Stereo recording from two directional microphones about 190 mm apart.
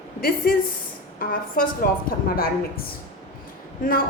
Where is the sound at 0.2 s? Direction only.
50° left (ahead or behind).